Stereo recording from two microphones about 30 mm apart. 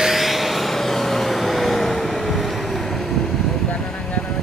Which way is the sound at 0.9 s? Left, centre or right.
Centre.